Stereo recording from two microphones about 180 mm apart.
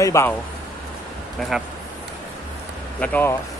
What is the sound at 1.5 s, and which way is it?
Speech, centre (ahead or behind).